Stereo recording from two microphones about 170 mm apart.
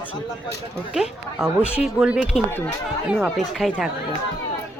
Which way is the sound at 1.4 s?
5° right (ahead or behind).